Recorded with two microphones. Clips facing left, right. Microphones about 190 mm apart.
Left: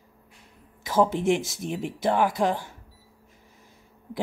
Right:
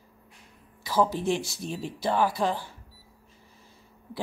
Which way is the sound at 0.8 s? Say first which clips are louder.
Left 3 dB; 20° left (ahead or behind).